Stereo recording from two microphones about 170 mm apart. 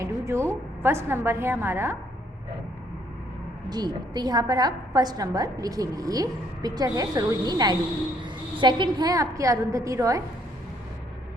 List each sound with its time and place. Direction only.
0.0 s a sound: 15° right (ahead or behind)
0.8 s a woman's voice: 15° right (ahead or behind)
3.7 s a woman's voice: 25° right (ahead or behind)